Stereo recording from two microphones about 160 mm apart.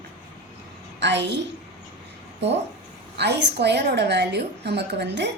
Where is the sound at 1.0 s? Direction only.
90° right.